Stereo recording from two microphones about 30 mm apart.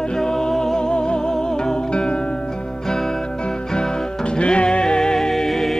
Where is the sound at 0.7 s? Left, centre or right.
Left.